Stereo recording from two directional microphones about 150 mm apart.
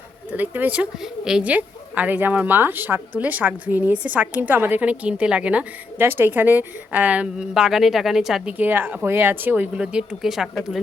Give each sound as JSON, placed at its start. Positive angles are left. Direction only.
{"t": 0.3, "sound": "a woman's voice", "side_deg": -10}